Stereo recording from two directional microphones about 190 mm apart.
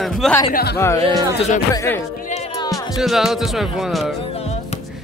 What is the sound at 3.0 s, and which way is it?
Speech, centre (ahead or behind).